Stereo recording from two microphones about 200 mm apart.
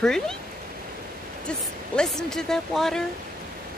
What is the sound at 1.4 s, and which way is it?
Speech, 5° left (ahead or behind).